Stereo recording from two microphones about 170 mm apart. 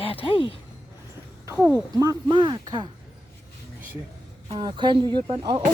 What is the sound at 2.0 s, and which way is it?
Speech, 20° right (ahead or behind).